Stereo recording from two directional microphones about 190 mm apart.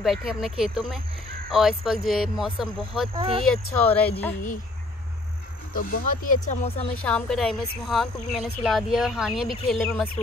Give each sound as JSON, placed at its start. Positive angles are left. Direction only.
{"t": 0.0, "sound": "speech", "side_deg": 0}
{"t": 3.2, "sound": "speech", "side_deg": -30}
{"t": 3.4, "sound": "speech", "side_deg": 5}
{"t": 5.7, "sound": "speech", "side_deg": 50}
{"t": 7.1, "sound": "speech", "side_deg": 5}